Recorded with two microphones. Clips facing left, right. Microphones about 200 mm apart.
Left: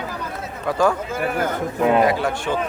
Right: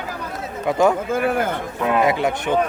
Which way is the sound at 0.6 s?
20° right (ahead or behind).